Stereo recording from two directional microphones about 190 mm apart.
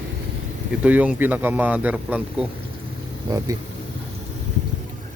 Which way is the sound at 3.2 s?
20° right (ahead or behind).